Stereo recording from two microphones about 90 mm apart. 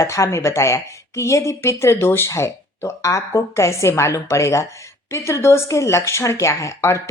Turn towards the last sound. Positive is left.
turn(degrees=35)  # may be behind; listen again after turning